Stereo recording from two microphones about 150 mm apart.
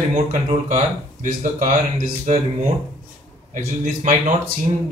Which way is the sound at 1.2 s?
65° right (ahead or behind).